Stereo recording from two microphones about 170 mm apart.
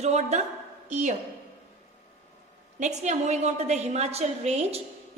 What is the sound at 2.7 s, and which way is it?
A woman's voice, 45° right (ahead or behind).